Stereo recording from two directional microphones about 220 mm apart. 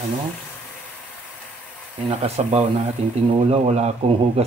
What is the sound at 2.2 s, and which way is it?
Speech, 30° right (ahead or behind).